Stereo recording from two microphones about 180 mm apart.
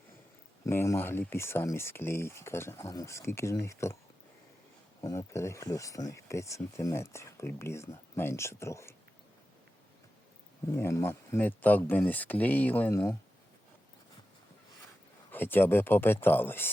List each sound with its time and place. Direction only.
0.6 s speech: 15° left (ahead or behind)
4.9 s speech: 15° left (ahead or behind)
10.7 s speech: 15° left (ahead or behind)
15.3 s speech: 10° left (ahead or behind)